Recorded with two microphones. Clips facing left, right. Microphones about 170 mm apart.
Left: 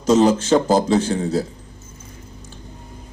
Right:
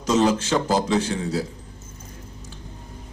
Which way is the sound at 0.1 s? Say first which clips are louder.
Left 5 dB; 35° left (ahead or behind).